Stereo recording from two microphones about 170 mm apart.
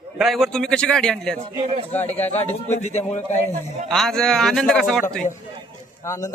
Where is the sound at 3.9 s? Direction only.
5° left (ahead or behind).